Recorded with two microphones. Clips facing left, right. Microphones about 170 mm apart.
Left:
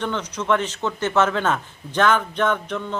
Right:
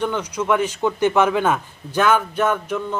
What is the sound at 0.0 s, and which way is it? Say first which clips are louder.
A man's voice: right 3 dB; 10° right (ahead or behind).